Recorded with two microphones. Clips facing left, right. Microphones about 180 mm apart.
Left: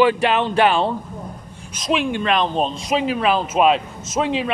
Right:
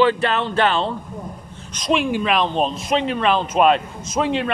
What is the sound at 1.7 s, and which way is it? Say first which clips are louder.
Speech: right 1 dB; centre (ahead or behind).